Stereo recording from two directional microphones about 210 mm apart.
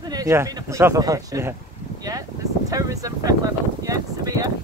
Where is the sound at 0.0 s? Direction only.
20° right (ahead or behind).